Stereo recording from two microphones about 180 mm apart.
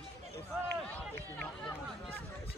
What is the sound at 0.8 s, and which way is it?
A man's voice, 10° left (ahead or behind).